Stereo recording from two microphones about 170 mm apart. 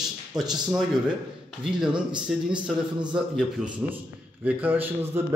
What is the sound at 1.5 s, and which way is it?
A man's voice, 5° right (ahead or behind).